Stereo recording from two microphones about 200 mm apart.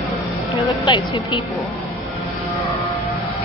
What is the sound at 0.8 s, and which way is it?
Speech, 25° left (ahead or behind).